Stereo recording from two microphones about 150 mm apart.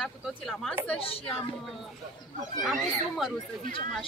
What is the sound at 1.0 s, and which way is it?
Speech, 40° left (ahead or behind).